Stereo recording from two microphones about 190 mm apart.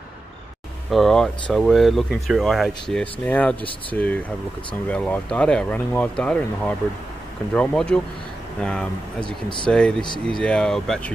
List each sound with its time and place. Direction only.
0.8 s speech: centre (ahead or behind)
9.2 s speech: 25° left (ahead or behind)
9.7 s speech: 5° left (ahead or behind)